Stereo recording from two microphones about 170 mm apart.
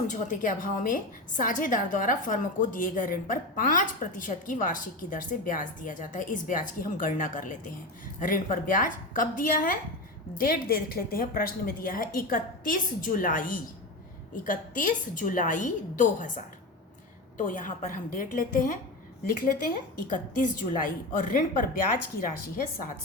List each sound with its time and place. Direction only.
0.1 s a woman's voice: 50° left (ahead or behind)